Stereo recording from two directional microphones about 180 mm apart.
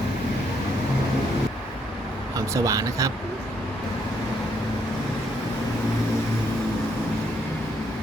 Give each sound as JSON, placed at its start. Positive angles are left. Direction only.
{"t": 2.5, "sound": "speech", "side_deg": -20}